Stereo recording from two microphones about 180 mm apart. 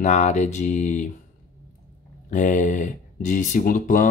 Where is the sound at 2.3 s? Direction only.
45° left (ahead or behind).